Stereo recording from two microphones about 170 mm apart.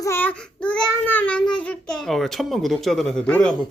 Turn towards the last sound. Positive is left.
turn(degrees=5)  # may be behind; listen again after turning